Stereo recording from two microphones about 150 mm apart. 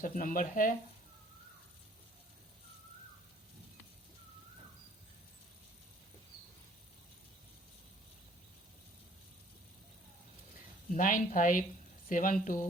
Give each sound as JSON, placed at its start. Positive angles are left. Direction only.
{"t": 0.0, "sound": "speech", "side_deg": 70}
{"t": 10.9, "sound": "speech", "side_deg": 60}